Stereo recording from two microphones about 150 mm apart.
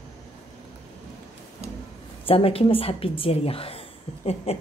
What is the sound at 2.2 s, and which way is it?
A woman's voice, 40° left (ahead or behind).